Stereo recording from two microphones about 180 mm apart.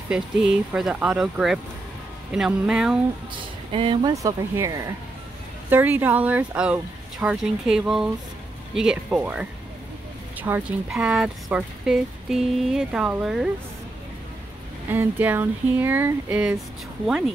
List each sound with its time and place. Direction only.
0.1 s speech: 5° right (ahead or behind)
3.7 s speech: 30° right (ahead or behind)
4.1 s speech: 20° right (ahead or behind); by 13.5 s centre (ahead or behind)
14.9 s speech: 10° right (ahead or behind)